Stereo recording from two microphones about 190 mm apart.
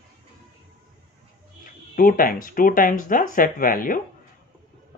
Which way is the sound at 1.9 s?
45° left (ahead or behind).